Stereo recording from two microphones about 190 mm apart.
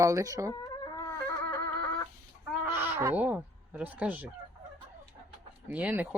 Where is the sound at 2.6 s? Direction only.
10° right (ahead or behind).